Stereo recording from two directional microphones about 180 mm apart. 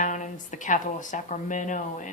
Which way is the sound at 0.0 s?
45° left (ahead or behind).